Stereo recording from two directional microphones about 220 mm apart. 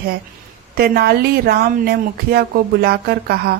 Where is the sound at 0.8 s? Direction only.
45° right (ahead or behind).